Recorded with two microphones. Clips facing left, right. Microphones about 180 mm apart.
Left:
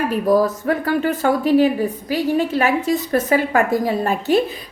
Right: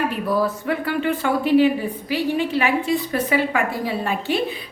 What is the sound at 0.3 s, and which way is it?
Speech, 40° left (ahead or behind).